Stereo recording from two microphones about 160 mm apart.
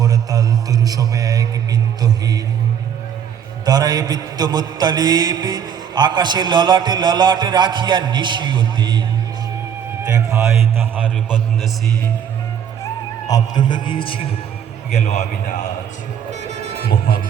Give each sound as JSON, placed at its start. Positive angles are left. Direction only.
{"t": 0.0, "sound": "music", "side_deg": -25}
{"t": 3.7, "sound": "a man's voice", "side_deg": -25}
{"t": 12.8, "sound": "a man's voice", "side_deg": 20}
{"t": 14.8, "sound": "a man's voice", "side_deg": 45}